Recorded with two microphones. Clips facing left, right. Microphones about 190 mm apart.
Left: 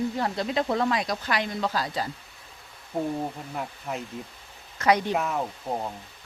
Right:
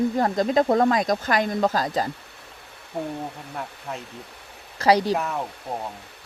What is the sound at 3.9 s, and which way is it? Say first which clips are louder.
Speech: left 2 dB; 5° left (ahead or behind).